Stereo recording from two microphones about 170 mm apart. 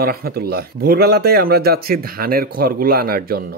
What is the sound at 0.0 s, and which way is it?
A man's voice, 65° right (ahead or behind).